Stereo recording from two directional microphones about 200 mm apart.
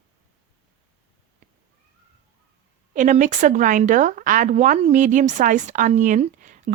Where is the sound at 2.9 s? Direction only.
40° right (ahead or behind).